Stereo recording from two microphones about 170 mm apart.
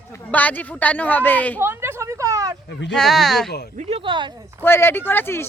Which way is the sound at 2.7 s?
90° left.